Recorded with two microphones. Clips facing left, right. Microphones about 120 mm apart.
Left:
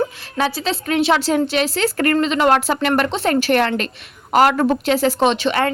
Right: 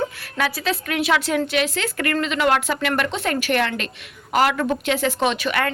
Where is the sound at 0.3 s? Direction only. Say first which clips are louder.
Left 3 dB; 30° left (ahead or behind).